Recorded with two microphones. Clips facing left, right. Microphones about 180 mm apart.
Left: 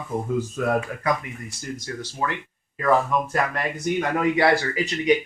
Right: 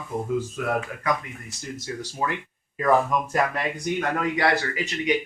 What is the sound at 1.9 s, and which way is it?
Speech, 15° right (ahead or behind).